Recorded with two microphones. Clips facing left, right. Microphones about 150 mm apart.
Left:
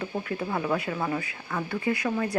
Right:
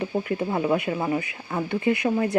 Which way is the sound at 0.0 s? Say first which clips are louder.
Right 5 dB; 20° right (ahead or behind).